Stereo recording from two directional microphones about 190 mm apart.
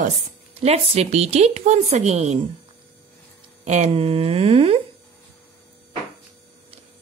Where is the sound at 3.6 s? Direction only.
40° right (ahead or behind).